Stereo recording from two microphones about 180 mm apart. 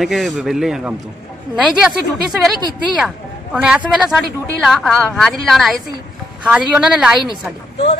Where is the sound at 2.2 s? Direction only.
20° right (ahead or behind).